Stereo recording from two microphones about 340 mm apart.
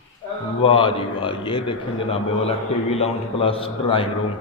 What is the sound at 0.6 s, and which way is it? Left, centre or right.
A man's voice, centre.